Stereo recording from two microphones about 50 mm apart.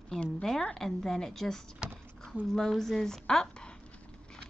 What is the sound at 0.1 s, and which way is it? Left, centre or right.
A woman's voice, centre.